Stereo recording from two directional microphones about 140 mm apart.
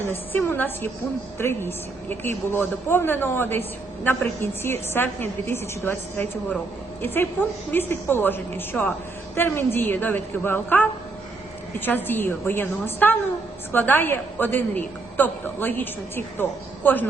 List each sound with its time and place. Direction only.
0.1 s a woman's voice: 15° left (ahead or behind)